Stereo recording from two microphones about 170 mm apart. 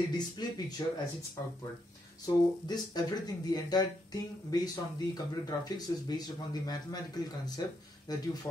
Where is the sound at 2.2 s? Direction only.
25° left (ahead or behind).